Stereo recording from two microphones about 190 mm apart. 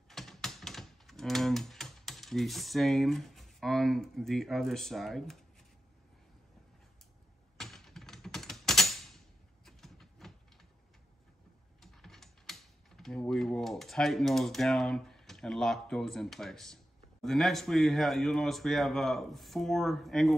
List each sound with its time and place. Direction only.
0.1 s typing: centre (ahead or behind)
7.5 s typing: centre (ahead or behind)
9.7 s a sound: centre (ahead or behind)
11.8 s speech: centre (ahead or behind)